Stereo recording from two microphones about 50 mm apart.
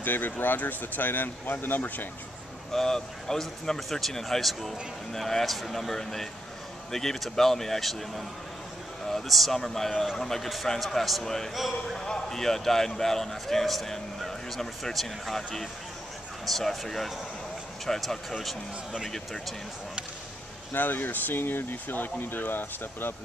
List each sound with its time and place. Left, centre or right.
0.0 s speech: left
2.7 s a man's voice: centre
9.0 s a man's voice: centre
11.5 s speech: centre
12.0 s a man's voice: centre
20.7 s speech: left